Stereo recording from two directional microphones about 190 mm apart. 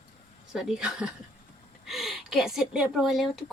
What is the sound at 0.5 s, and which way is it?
Speech, 5° right (ahead or behind).